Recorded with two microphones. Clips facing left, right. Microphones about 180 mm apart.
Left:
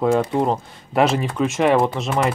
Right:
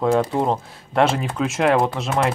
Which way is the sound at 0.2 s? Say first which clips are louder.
Left 1 dB; centre (ahead or behind).